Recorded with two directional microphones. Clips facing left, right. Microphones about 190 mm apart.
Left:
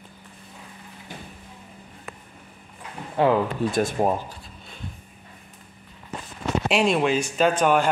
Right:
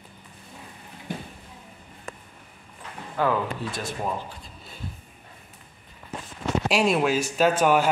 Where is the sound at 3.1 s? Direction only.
25° left (ahead or behind).